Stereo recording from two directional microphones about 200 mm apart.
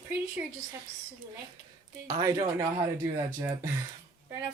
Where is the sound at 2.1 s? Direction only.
15° right (ahead or behind).